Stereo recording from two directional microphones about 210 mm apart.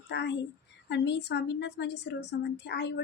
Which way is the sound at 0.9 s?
55° left (ahead or behind).